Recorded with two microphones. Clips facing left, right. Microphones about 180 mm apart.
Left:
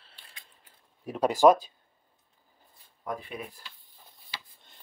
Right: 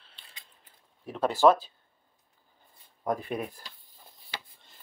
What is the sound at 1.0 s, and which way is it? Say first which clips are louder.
Speech: left 2 dB; 10° left (ahead or behind).